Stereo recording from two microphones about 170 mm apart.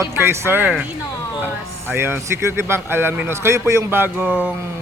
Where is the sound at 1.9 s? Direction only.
15° right (ahead or behind).